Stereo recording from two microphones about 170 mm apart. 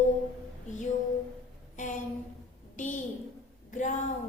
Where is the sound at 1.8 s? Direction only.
50° left (ahead or behind).